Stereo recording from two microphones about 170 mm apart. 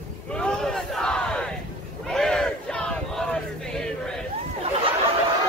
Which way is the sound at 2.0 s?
Centre (ahead or behind).